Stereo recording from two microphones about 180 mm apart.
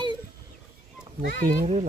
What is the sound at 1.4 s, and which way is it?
Speech, 45° right (ahead or behind).